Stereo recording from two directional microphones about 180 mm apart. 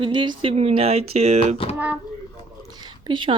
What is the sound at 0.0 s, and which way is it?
Speech, 25° right (ahead or behind).